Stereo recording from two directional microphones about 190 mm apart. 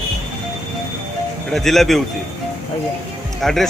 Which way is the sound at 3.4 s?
Centre (ahead or behind).